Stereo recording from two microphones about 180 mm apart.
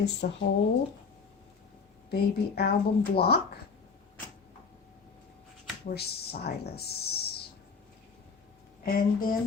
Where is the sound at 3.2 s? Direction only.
60° left (ahead or behind).